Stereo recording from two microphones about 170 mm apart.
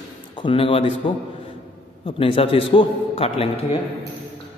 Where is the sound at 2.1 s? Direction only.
30° left (ahead or behind).